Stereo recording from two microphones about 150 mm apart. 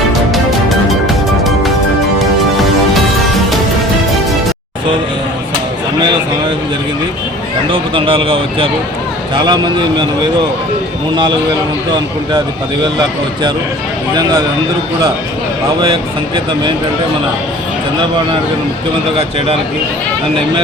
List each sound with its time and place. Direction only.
0.3 s music: centre (ahead or behind)
7.7 s a man's voice: 35° right (ahead or behind)
15.8 s a man's voice: 35° right (ahead or behind)